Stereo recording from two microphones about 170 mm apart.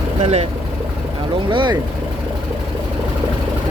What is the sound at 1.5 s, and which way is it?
Speech, 30° right (ahead or behind).